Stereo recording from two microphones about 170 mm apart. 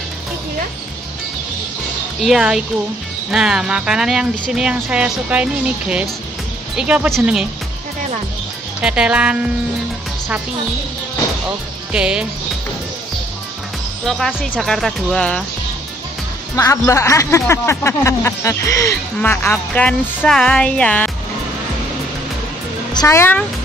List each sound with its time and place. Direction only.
2.2 s speech: 5° right (ahead or behind)
8.8 s speech: 5° right (ahead or behind)
11.9 s speech: 5° right (ahead or behind)
14.0 s speech: centre (ahead or behind)
16.5 s speech: 15° left (ahead or behind)
22.9 s speech: 15° left (ahead or behind)